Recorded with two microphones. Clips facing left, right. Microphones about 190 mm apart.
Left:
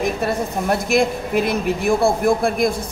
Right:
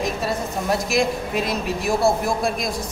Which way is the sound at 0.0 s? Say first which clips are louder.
Left 3 dB; 55° left (ahead or behind).